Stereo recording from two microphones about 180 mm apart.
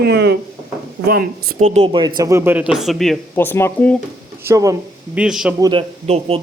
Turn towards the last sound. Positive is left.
turn(degrees=-30)  # may be behind; listen again after turning